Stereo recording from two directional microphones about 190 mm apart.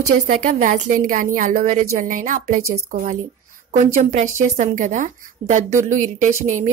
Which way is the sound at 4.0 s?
40° right (ahead or behind).